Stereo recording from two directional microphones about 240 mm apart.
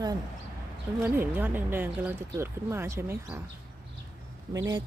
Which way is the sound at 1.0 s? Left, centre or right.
Centre.